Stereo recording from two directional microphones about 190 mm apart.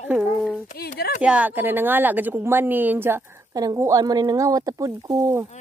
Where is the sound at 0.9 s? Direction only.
55° left (ahead or behind).